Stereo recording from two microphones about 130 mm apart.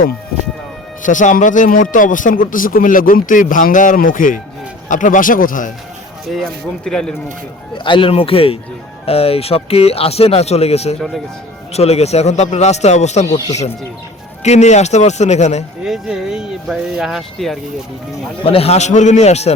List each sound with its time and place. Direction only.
1.0 s speech: 80° left
6.2 s speech: centre (ahead or behind)
7.9 s speech: 40° left (ahead or behind); by 13.2 s 60° left (ahead or behind)
13.2 s speech: 25° left (ahead or behind)
14.4 s speech: 60° left (ahead or behind)
15.8 s speech: 5° right (ahead or behind)
18.4 s speech: 50° left (ahead or behind)